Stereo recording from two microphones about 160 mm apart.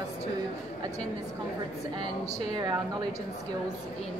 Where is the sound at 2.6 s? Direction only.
25° right (ahead or behind).